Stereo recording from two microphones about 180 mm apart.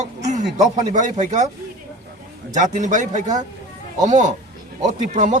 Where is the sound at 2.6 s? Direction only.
45° right (ahead or behind).